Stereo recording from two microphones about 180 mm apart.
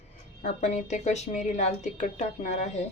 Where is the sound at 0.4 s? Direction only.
40° left (ahead or behind).